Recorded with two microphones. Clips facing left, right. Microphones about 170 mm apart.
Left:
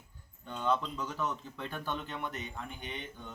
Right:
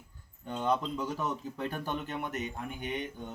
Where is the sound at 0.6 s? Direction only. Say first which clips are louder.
Right 2 dB; 15° right (ahead or behind).